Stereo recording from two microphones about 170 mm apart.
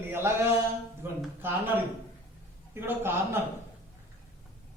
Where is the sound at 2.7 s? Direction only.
15° right (ahead or behind).